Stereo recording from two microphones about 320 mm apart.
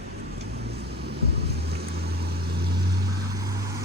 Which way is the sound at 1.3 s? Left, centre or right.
Right.